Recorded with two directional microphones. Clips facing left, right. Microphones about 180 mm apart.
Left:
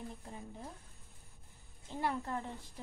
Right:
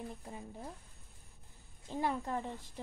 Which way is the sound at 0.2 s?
10° right (ahead or behind).